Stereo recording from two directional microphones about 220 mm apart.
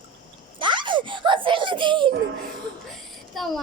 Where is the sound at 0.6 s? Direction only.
20° right (ahead or behind).